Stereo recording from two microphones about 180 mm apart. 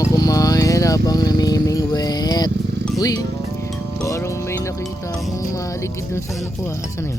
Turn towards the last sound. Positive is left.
turn(degrees=15)  # may be behind; listen again after turning